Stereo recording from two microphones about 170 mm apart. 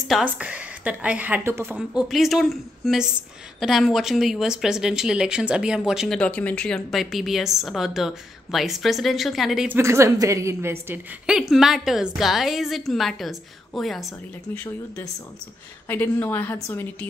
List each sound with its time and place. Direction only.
0.1 s speech: 5° right (ahead or behind)
9.7 s speech: 15° right (ahead or behind)
11.2 s speech: centre (ahead or behind)
14.5 s a woman's voice: 10° left (ahead or behind)